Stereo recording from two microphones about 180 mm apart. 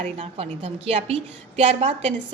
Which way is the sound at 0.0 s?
35° right (ahead or behind).